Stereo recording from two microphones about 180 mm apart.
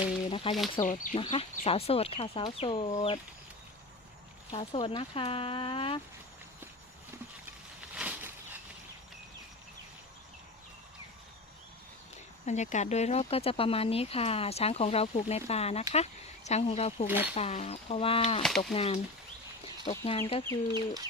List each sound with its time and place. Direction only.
0.3 s a sound: 30° left (ahead or behind)
0.8 s speech: 45° left (ahead or behind)
1.1 s speech: 30° left (ahead or behind)
4.5 s speech: 30° left (ahead or behind)
7.9 s a sound: 5° right (ahead or behind)
12.5 s speech: 40° left (ahead or behind)
17.1 s speech: 10° right (ahead or behind)
17.3 s speech: 35° left (ahead or behind)
20.1 s speech: 35° left (ahead or behind)
20.7 s bird: 20° right (ahead or behind)